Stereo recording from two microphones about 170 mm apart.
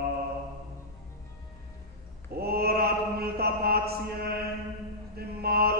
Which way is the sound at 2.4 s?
65° right (ahead or behind).